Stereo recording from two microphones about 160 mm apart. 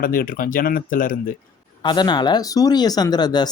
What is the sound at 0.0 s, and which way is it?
Speech, 60° left (ahead or behind).